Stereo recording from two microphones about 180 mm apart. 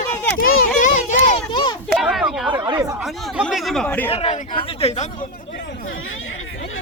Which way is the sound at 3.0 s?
Centre (ahead or behind).